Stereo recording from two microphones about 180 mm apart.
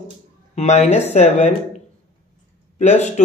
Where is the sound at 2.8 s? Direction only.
40° left (ahead or behind).